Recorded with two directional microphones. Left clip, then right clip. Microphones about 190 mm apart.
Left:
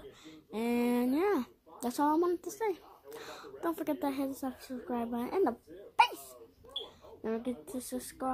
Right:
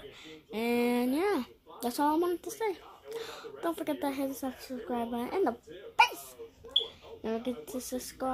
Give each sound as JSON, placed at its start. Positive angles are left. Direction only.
{"t": 0.5, "sound": "speech", "side_deg": 0}
{"t": 7.2, "sound": "speech", "side_deg": -5}